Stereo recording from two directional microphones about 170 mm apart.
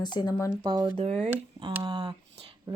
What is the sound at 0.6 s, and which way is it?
Speech, 25° right (ahead or behind).